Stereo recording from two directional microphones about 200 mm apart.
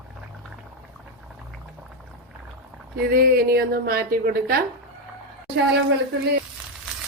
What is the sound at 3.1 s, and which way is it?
Speech, 50° right (ahead or behind).